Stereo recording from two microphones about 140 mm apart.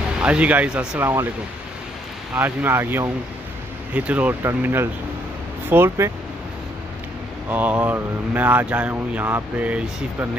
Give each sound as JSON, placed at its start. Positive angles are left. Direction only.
{"t": 0.2, "sound": "speech", "side_deg": -10}
{"t": 2.3, "sound": "speech", "side_deg": -15}
{"t": 7.4, "sound": "speech", "side_deg": -10}